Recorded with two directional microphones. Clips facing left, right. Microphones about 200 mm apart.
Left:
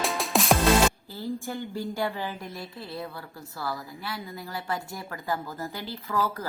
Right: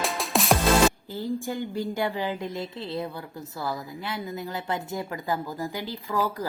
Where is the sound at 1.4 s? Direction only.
15° right (ahead or behind).